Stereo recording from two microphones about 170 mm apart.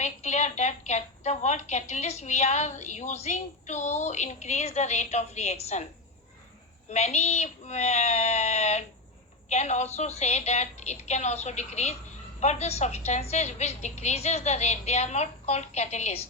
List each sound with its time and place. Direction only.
0.0 s a woman's voice: 40° left (ahead or behind)
6.9 s a woman's voice: 40° left (ahead or behind)